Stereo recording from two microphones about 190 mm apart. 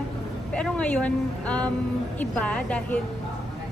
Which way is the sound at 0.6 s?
5° left (ahead or behind).